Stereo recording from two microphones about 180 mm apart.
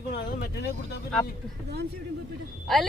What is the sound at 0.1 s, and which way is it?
Vehicle, 65° left (ahead or behind).